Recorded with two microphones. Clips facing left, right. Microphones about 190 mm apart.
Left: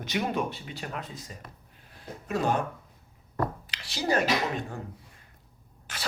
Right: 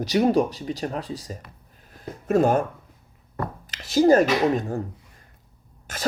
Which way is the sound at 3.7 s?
45° right (ahead or behind).